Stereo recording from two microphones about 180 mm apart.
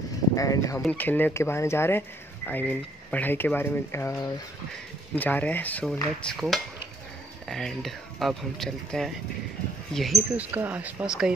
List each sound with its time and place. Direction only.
0.4 s speech: 20° left (ahead or behind); by 11.3 s 5° right (ahead or behind)